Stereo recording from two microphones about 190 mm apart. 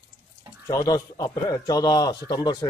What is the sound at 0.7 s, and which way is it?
A man's voice, 20° left (ahead or behind).